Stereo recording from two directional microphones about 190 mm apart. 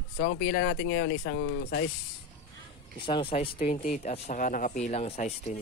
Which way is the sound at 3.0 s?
25° left (ahead or behind).